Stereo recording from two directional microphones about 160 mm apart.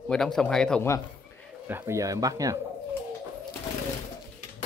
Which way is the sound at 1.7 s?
20° right (ahead or behind).